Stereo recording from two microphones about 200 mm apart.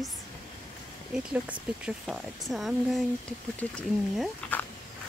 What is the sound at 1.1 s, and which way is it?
Speech, 5° right (ahead or behind).